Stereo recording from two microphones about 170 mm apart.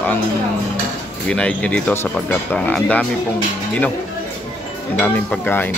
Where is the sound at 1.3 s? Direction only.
5° left (ahead or behind).